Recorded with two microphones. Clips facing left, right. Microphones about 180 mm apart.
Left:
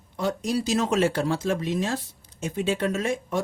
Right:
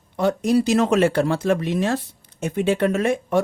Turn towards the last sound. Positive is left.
turn(degrees=-65)  # may be behind; listen again after turning